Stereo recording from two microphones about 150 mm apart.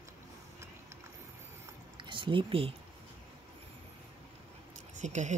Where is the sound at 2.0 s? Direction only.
30° right (ahead or behind).